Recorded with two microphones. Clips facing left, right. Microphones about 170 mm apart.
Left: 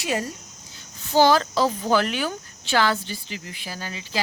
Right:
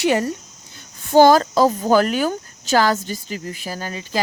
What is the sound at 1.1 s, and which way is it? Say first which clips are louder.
Speech: right 6 dB; 45° right (ahead or behind).